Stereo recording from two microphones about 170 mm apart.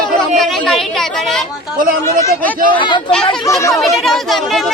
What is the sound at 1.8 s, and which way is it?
Speech, 55° right (ahead or behind).